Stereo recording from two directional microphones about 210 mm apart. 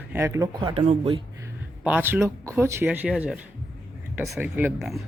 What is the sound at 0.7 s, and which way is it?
Speech, 30° right (ahead or behind).